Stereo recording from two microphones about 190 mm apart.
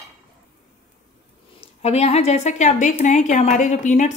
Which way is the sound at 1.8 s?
35° left (ahead or behind).